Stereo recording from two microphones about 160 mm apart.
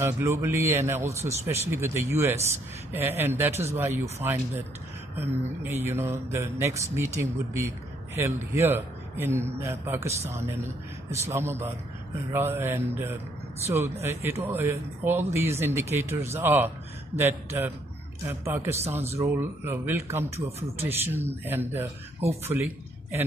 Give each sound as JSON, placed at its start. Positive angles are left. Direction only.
{"t": 0.0, "sound": "speech", "side_deg": -15}